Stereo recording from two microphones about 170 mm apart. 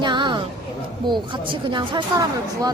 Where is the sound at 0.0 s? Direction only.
25° right (ahead or behind).